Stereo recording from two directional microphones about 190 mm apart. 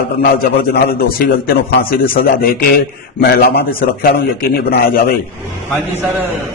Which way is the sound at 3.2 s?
60° left (ahead or behind).